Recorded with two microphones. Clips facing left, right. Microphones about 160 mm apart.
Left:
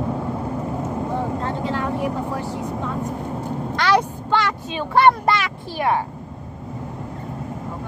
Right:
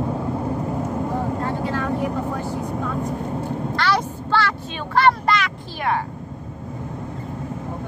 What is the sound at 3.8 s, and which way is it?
Speech, 15° left (ahead or behind).